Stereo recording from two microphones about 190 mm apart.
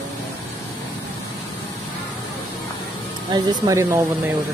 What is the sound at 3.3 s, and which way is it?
Speech, 20° right (ahead or behind).